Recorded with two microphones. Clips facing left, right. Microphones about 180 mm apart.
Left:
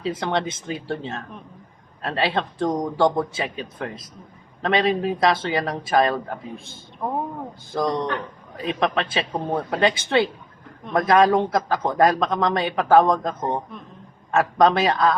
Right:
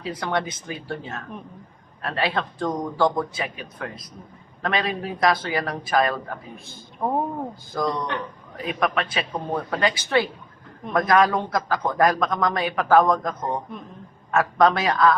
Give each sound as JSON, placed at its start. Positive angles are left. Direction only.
{"t": 0.0, "sound": "a man's voice", "side_deg": 25}
{"t": 7.7, "sound": "a man's voice", "side_deg": 25}